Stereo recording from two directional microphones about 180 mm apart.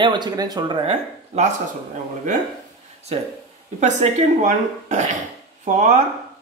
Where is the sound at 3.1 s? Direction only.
35° right (ahead or behind).